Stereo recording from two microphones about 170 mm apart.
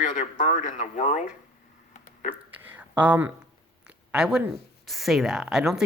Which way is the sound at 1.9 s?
45° left (ahead or behind).